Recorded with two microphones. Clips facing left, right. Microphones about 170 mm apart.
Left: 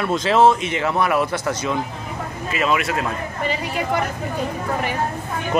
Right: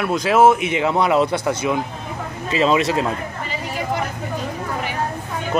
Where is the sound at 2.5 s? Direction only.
25° right (ahead or behind).